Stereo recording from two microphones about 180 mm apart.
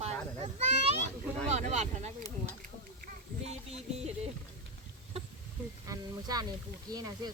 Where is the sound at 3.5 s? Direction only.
35° right (ahead or behind).